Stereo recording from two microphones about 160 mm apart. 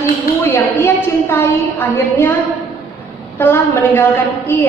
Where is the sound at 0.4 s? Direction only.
15° left (ahead or behind).